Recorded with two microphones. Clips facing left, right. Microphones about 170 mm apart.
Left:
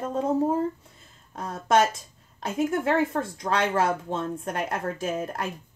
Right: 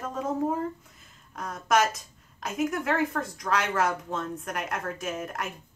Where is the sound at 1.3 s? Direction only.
30° left (ahead or behind).